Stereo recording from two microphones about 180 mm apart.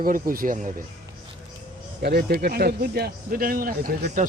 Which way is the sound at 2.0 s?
60° right (ahead or behind).